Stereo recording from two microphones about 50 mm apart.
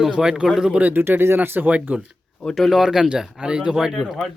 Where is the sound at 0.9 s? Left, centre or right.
Right.